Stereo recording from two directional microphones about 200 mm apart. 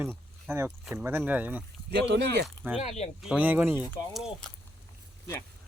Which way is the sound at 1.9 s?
60° right (ahead or behind).